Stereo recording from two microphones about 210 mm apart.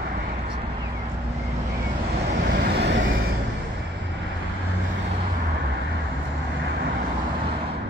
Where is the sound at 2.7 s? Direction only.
55° right (ahead or behind).